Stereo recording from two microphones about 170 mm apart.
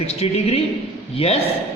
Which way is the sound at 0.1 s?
40° left (ahead or behind).